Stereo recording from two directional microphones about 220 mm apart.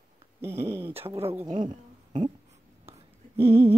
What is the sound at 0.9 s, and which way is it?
Speech, 25° right (ahead or behind).